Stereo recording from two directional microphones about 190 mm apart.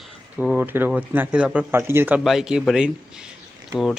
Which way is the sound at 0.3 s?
5° right (ahead or behind).